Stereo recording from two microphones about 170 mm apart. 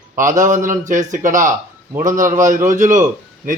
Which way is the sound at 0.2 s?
50° right (ahead or behind).